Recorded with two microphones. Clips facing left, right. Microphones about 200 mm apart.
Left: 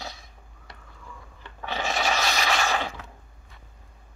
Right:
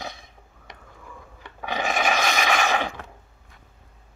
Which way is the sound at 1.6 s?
15° right (ahead or behind).